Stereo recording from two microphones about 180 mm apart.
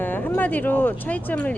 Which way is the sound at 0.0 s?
10° left (ahead or behind).